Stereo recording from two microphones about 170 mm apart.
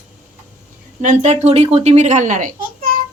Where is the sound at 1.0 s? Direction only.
45° right (ahead or behind).